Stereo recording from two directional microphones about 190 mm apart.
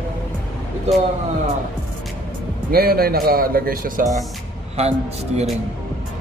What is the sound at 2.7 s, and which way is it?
Speech, 50° right (ahead or behind).